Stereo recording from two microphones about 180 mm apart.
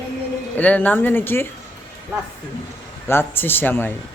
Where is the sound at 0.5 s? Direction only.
10° left (ahead or behind).